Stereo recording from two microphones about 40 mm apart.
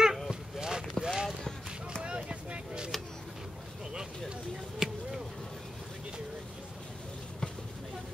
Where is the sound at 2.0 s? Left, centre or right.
Right.